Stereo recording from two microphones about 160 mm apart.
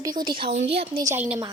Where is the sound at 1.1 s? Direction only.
10° right (ahead or behind).